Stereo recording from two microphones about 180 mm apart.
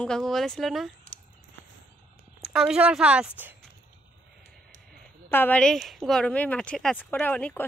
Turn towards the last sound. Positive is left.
turn(degrees=5)  # may be behind; listen again after turning